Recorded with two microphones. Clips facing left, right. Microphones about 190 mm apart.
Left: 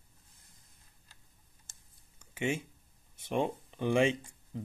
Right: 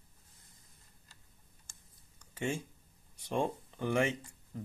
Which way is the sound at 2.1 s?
10° left (ahead or behind).